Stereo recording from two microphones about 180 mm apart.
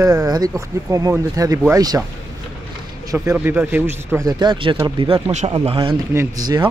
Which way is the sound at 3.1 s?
15° right (ahead or behind).